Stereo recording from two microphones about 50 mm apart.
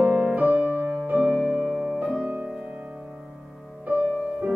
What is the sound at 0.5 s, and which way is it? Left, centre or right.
Music, right.